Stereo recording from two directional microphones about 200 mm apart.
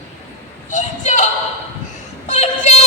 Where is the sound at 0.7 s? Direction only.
40° left (ahead or behind).